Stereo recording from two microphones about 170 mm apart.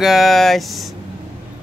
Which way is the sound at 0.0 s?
Centre (ahead or behind).